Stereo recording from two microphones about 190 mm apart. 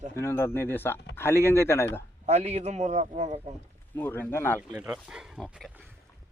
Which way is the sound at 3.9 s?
10° left (ahead or behind).